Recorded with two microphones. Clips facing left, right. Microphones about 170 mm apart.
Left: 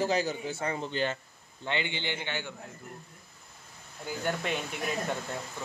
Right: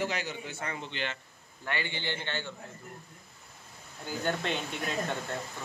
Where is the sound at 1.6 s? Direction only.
20° left (ahead or behind).